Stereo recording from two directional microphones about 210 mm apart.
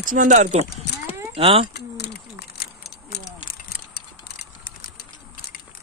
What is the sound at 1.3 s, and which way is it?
Speech, 25° right (ahead or behind).